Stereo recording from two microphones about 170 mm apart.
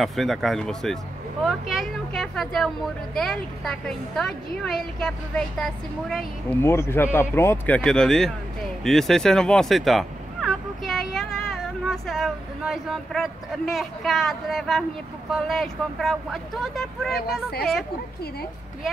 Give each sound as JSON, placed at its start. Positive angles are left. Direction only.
{"t": 0.0, "sound": "a woman's voice", "side_deg": 0}
{"t": 6.6, "sound": "a woman's voice", "side_deg": 15}
{"t": 17.1, "sound": "speech", "side_deg": 65}